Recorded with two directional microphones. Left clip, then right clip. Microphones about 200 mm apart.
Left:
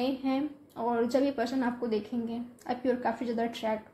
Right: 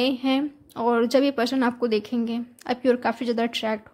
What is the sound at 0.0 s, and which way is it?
A woman's voice, 40° right (ahead or behind).